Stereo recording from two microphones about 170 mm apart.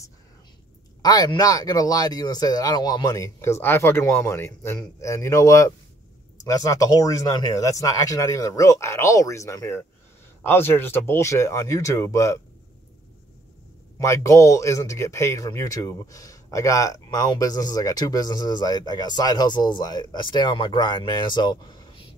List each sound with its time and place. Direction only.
1.0 s speech: 25° left (ahead or behind)
13.9 s speech: 15° left (ahead or behind)